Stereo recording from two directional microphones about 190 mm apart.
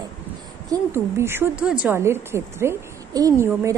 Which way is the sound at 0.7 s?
15° right (ahead or behind).